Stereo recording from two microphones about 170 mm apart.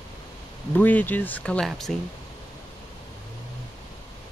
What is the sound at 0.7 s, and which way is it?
Speech, 10° left (ahead or behind).